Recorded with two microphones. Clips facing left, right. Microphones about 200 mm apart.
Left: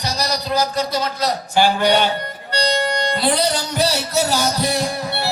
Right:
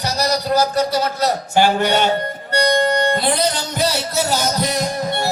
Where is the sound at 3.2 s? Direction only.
10° left (ahead or behind).